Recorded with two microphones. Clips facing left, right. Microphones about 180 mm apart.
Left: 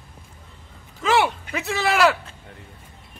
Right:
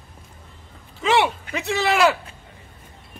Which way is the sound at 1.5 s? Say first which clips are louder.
Right 2 dB; centre (ahead or behind).